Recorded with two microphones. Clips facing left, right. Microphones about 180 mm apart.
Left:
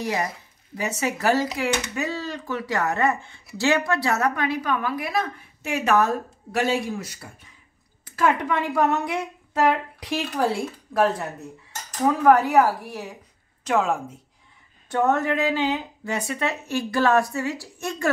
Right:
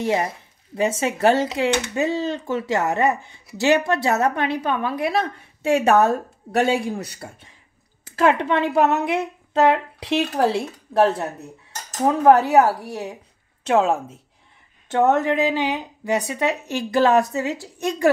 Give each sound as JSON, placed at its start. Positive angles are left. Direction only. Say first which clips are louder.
{"t": 0.0, "sound": "a woman's voice", "louder": "right 5 dB", "side_deg": -25}
{"t": 13.7, "sound": "speech", "louder": "right 4 dB", "side_deg": -30}